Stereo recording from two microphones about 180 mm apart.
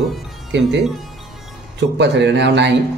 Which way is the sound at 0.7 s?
Centre (ahead or behind).